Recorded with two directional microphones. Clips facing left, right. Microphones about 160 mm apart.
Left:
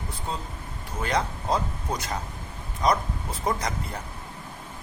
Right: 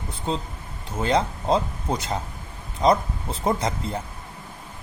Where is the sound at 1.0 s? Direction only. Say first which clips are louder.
Right 5 dB; 25° right (ahead or behind).